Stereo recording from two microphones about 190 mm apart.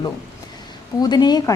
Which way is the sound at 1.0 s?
20° left (ahead or behind).